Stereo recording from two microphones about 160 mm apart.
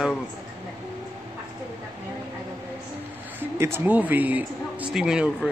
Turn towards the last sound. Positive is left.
turn(degrees=-5)  # may be behind; listen again after turning